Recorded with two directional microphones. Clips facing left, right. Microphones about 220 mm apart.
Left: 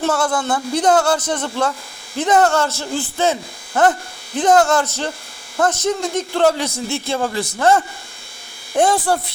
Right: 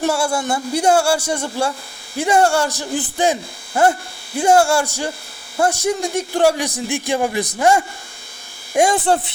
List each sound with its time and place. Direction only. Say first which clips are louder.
0.0 s a man's voice: even; 10° right (ahead or behind)